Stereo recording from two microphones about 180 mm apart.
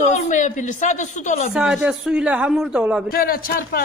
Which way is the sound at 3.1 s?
55° left (ahead or behind).